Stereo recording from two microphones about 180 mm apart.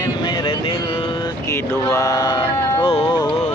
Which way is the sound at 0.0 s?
25° left (ahead or behind).